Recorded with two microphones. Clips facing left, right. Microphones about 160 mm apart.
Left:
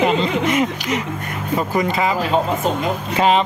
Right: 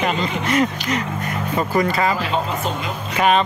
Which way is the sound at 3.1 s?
25° left (ahead or behind).